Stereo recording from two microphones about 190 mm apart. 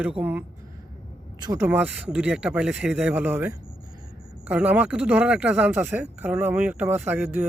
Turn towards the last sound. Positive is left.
turn(degrees=-10)  # may be behind; listen again after turning